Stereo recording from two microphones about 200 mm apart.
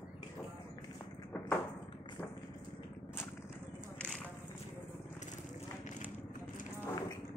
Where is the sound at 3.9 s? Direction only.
5° left (ahead or behind).